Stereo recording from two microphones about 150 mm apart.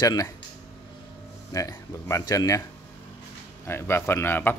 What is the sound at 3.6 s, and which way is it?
Speech, 15° left (ahead or behind).